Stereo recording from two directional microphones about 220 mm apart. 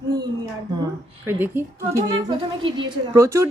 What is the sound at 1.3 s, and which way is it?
Speech, 10° right (ahead or behind).